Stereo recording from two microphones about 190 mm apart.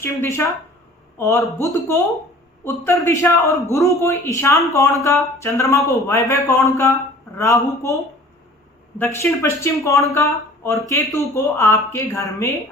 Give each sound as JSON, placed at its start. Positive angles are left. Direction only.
{"t": 0.0, "sound": "a man's voice", "side_deg": 15}
{"t": 9.0, "sound": "a man's voice", "side_deg": 15}